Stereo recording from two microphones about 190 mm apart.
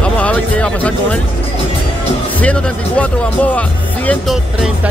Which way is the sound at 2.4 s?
5° left (ahead or behind).